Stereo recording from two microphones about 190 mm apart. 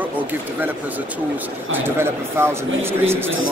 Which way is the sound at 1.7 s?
10° right (ahead or behind).